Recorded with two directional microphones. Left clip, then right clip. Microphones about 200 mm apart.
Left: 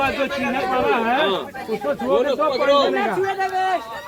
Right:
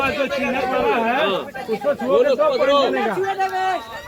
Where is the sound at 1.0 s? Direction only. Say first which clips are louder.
Even; 50° left (ahead or behind).